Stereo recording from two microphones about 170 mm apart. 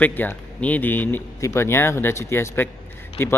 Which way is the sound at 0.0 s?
10° left (ahead or behind).